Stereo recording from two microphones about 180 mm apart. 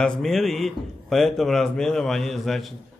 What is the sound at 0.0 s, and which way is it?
A man's voice, centre (ahead or behind).